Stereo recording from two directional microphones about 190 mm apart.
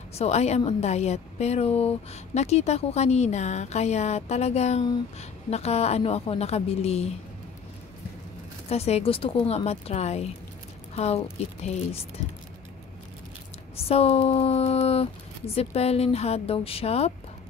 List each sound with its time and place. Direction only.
0.1 s a woman's voice: 35° left (ahead or behind)
8.6 s a woman's voice: 35° left (ahead or behind)
13.7 s a woman's voice: 30° left (ahead or behind)